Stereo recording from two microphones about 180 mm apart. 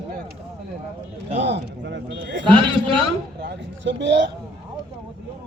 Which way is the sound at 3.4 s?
75° right (ahead or behind).